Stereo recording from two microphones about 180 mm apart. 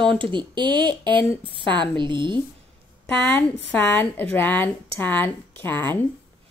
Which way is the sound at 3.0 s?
10° left (ahead or behind).